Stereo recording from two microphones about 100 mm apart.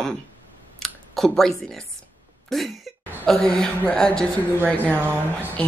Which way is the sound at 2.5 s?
5° left (ahead or behind).